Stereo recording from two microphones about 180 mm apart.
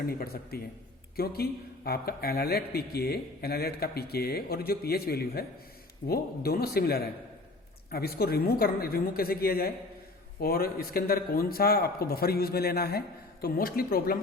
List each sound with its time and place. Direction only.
0.5 s speech: 60° left (ahead or behind)